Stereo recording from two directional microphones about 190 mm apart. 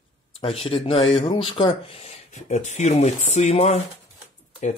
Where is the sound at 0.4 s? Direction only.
30° left (ahead or behind).